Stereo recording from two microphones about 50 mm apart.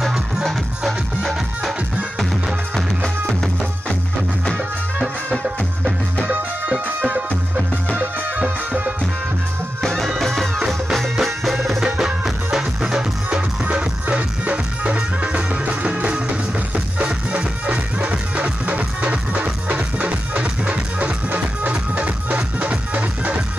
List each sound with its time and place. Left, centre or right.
0.0 s music: centre
8.4 s music: right
9.8 s music: centre; by 15.0 s right
15.0 s music: centre
15.6 s music: right